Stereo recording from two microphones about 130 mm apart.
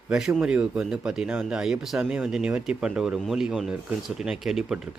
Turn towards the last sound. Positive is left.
turn(degrees=-5)  # may be behind; listen again after turning